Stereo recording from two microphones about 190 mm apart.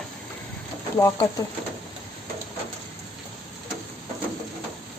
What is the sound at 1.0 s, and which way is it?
Speech, 15° left (ahead or behind).